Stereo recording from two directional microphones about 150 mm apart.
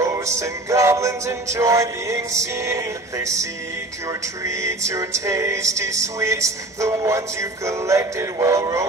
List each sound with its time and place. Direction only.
0.0 s music: 20° right (ahead or behind)
4.5 s music: 20° right (ahead or behind)